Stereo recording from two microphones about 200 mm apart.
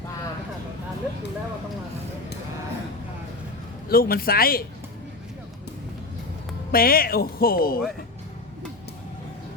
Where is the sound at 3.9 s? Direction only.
50° left (ahead or behind).